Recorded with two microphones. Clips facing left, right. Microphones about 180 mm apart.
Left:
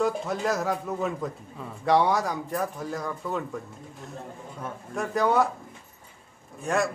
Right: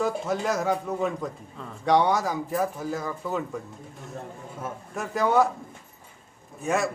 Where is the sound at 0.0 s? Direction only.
Centre (ahead or behind).